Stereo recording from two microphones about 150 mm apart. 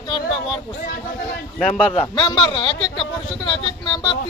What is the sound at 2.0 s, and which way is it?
Speech, 30° left (ahead or behind).